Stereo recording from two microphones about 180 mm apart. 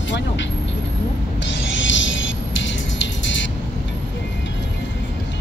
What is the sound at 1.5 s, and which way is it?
Music, 90° left.